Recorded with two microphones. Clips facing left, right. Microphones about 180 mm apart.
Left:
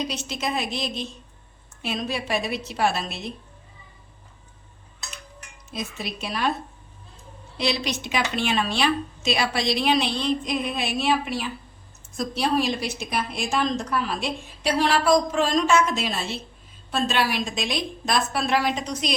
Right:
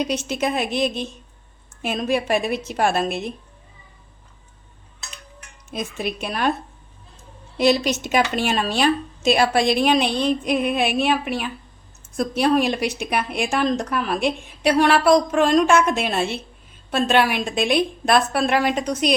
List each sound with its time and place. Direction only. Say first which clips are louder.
0.0 s a woman's voice: right 6 dB; 55° right (ahead or behind)
5.7 s speech: right 5 dB; 55° right (ahead or behind)
7.6 s a woman's voice: right 8 dB; 45° right (ahead or behind)